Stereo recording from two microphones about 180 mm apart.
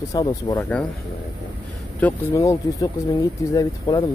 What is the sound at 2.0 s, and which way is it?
Speech, 15° left (ahead or behind).